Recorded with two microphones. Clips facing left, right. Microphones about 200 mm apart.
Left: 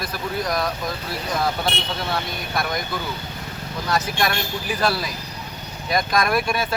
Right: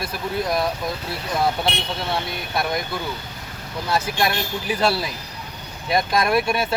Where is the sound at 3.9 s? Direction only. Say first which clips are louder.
Right 1 dB; 25° right (ahead or behind).